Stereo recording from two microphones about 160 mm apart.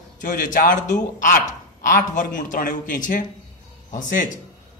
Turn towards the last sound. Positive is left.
turn(degrees=55)  # may be behind; listen again after turning